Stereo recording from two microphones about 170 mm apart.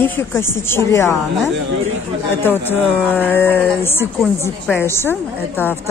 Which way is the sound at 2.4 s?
10° left (ahead or behind).